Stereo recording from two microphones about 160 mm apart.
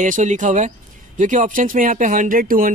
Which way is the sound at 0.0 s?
50° right (ahead or behind).